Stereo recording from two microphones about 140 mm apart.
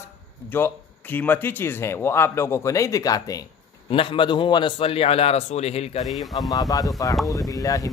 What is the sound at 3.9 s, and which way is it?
A man's voice, 40° left (ahead or behind).